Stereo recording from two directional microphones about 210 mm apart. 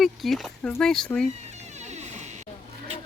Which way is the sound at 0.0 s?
Centre (ahead or behind).